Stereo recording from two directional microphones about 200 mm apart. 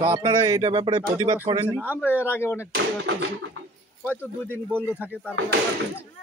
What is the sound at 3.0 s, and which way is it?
Speech, 65° right (ahead or behind).